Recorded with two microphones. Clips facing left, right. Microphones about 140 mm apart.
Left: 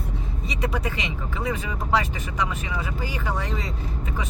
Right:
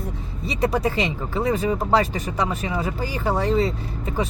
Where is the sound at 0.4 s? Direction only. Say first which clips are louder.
Right 6 dB; 35° right (ahead or behind).